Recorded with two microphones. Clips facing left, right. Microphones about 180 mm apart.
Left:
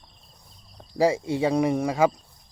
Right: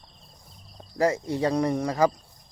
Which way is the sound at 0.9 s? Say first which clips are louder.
Left 2 dB; 10° left (ahead or behind).